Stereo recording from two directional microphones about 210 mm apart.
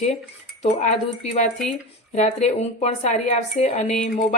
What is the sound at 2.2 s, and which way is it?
Speech, 35° left (ahead or behind).